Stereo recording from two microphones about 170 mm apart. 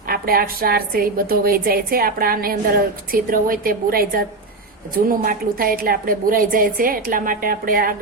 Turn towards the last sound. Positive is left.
turn(degrees=-55)  # may be behind; listen again after turning